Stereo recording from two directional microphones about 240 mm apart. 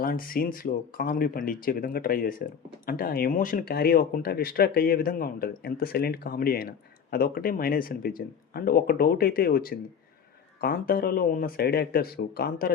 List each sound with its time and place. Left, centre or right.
0.0 s speech: left